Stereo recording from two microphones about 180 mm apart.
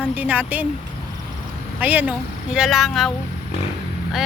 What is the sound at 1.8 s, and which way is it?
Speech, 10° right (ahead or behind).